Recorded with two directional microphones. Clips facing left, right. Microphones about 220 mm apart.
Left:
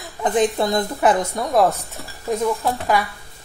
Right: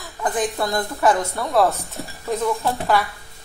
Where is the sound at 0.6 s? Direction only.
20° left (ahead or behind).